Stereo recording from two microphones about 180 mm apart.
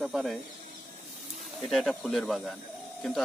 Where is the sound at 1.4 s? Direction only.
Centre (ahead or behind).